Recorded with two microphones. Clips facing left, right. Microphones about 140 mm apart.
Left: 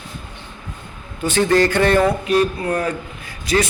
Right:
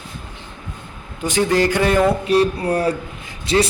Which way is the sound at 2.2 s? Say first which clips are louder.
Right 1 dB; 30° right (ahead or behind).